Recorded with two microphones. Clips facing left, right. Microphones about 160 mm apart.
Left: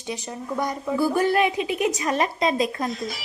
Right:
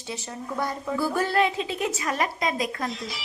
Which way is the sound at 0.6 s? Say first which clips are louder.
Left 4 dB; 15° left (ahead or behind).